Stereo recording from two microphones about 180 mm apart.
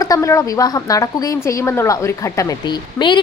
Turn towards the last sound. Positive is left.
turn(degrees=25)  # may be behind; listen again after turning